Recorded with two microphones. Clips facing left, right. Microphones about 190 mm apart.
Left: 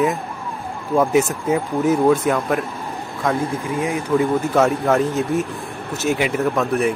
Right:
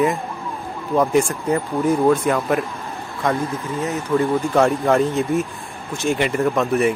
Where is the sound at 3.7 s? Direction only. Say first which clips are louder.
Left 1 dB; 10° left (ahead or behind).